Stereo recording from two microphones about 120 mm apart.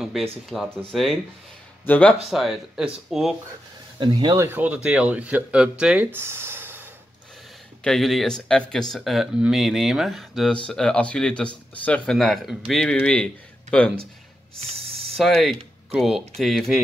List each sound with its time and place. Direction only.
0.7 s speech: 5° left (ahead or behind)
2.2 s speech: centre (ahead or behind)
4.0 s speech: 35° right (ahead or behind)
4.5 s speech: 15° right (ahead or behind)
6.1 s a sound: 20° right (ahead or behind)
7.8 s speech: 5° left (ahead or behind)
15.1 s speech: centre (ahead or behind)